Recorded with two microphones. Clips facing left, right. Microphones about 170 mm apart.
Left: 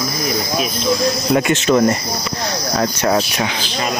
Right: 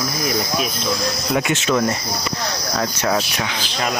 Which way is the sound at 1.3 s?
5° right (ahead or behind).